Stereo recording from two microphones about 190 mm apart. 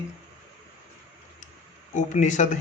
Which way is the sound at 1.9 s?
40° left (ahead or behind).